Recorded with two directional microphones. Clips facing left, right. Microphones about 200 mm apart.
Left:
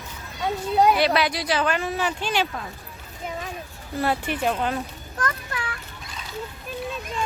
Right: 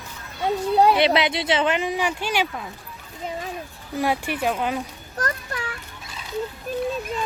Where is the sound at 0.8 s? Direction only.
25° right (ahead or behind); by 2.6 s 10° right (ahead or behind).